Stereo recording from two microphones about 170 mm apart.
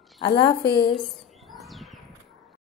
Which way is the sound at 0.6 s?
80° left.